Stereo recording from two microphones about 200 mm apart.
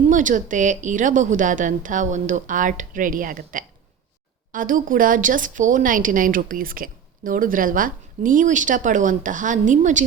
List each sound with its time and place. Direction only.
0.1 s a woman's voice: 40° right (ahead or behind)